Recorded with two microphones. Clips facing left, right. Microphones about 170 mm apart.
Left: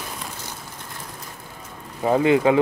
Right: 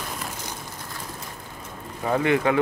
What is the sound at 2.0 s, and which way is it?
Speech, 20° left (ahead or behind).